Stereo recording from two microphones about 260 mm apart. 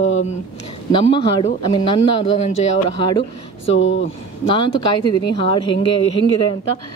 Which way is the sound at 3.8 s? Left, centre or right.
Left.